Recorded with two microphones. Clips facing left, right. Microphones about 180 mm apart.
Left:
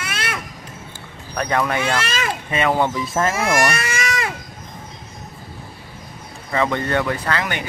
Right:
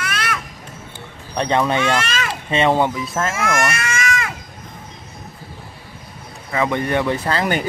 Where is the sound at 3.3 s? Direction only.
35° left (ahead or behind).